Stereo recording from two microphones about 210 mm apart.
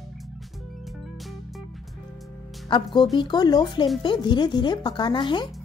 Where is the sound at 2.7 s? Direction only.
20° left (ahead or behind).